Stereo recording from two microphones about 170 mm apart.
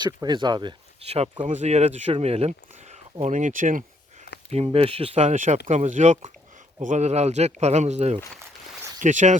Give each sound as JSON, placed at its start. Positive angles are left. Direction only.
{"t": 0.0, "sound": "speech", "side_deg": -25}
{"t": 4.5, "sound": "speech", "side_deg": -35}